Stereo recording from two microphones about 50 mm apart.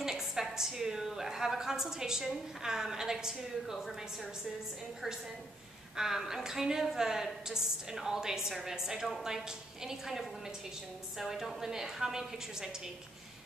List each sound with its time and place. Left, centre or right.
0.0 s a woman's voice: centre
5.9 s a woman's voice: centre